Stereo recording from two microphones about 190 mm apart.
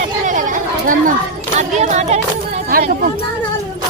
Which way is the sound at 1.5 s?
35° right (ahead or behind).